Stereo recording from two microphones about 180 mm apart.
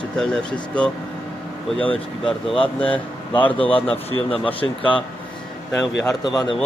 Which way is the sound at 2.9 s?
10° left (ahead or behind).